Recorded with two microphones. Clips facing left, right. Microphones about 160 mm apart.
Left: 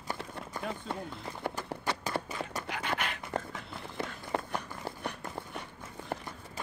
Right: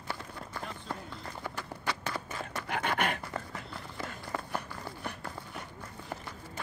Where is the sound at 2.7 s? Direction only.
55° right (ahead or behind).